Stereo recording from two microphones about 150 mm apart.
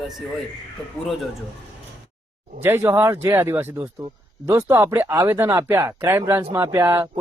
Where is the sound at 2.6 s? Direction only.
15° right (ahead or behind).